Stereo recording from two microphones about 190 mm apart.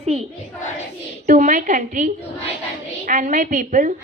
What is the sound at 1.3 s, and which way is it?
Speech, 45° right (ahead or behind).